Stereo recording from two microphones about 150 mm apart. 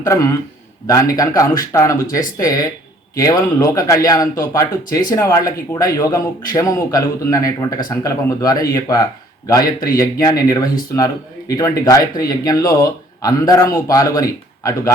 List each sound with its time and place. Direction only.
0.0 s speech: 20° left (ahead or behind)